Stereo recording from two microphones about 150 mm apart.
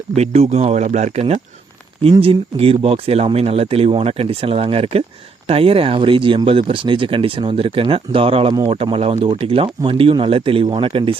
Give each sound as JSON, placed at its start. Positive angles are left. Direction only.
{"t": 0.2, "sound": "speech", "side_deg": -45}